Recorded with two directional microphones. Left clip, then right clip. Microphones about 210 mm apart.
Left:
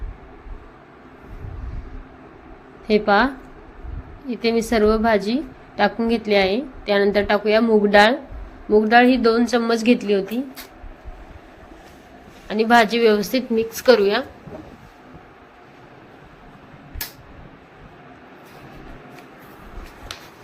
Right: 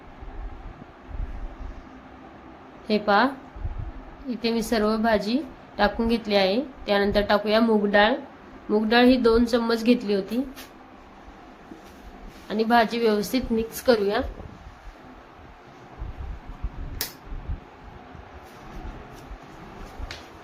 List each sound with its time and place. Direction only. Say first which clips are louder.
2.8 s a woman's voice: left 4 dB; 15° left (ahead or behind)
4.3 s a woman's voice: left 6 dB; 10° left (ahead or behind)
7.9 s speech: left 7 dB; 25° left (ahead or behind)
8.7 s a woman's voice: left 5 dB; 5° left (ahead or behind)
12.5 s a woman's voice: left 5 dB; 20° left (ahead or behind)